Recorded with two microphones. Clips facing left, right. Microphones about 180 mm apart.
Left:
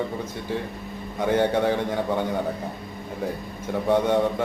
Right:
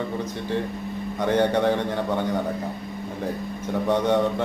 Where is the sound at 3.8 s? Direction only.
10° left (ahead or behind).